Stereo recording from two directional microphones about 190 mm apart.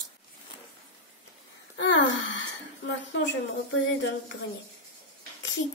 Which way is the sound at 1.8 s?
75° left (ahead or behind).